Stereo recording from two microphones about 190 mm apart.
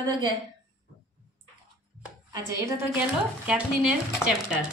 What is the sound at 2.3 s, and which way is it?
Speech, 15° right (ahead or behind).